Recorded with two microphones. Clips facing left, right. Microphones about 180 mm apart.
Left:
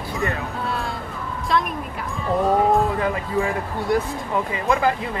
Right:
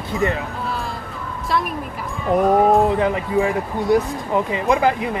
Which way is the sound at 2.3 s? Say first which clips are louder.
Right 4 dB; 20° right (ahead or behind).